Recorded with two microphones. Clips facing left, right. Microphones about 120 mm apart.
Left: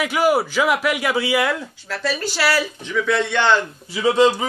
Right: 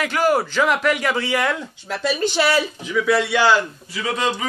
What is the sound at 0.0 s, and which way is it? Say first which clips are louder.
Speech: left 1 dB; 10° left (ahead or behind).